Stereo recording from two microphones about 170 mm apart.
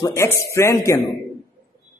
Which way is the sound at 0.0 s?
15° left (ahead or behind).